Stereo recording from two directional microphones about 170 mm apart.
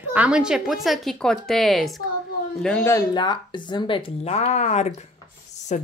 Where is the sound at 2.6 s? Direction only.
10° left (ahead or behind).